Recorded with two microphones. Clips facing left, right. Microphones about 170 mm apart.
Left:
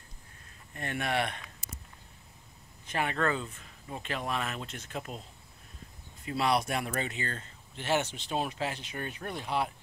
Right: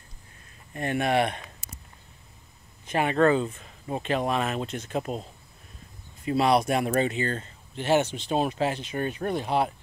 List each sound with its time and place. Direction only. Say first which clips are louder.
0.7 s speech: right 8 dB; 20° right (ahead or behind)
2.9 s speech: right 9 dB; 20° right (ahead or behind)
6.2 s speech: right 7 dB; 20° right (ahead or behind)